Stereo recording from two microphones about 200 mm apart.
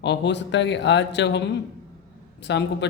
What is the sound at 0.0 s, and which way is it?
Speech, 60° left (ahead or behind).